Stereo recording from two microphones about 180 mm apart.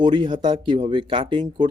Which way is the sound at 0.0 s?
25° right (ahead or behind).